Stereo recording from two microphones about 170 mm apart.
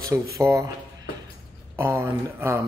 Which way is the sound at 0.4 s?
20° right (ahead or behind).